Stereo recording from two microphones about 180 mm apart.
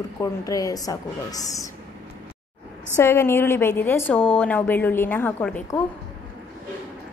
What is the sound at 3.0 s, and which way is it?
A woman's voice, 15° left (ahead or behind).